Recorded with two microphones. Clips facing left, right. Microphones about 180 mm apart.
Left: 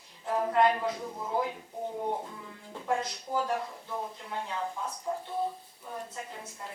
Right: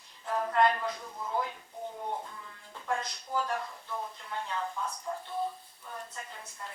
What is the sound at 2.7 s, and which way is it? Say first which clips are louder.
Speech: left 3 dB; 10° left (ahead or behind).